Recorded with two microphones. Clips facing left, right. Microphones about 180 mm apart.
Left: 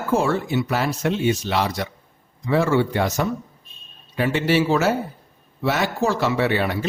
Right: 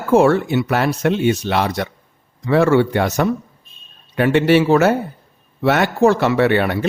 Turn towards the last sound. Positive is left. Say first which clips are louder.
# right 5 dB
turn(degrees=-60)  # may be behind; listen again after turning